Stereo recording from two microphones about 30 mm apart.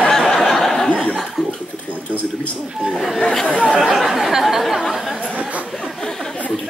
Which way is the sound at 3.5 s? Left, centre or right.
Right.